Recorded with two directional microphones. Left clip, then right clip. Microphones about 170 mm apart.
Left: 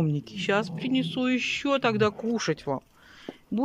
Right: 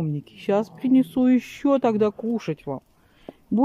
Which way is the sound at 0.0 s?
15° right (ahead or behind).